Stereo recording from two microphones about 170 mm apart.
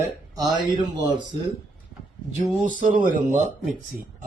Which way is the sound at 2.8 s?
55° right (ahead or behind).